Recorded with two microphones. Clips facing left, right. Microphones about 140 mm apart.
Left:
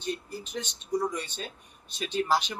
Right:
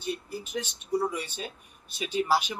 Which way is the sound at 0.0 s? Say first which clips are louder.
Even; 10° right (ahead or behind).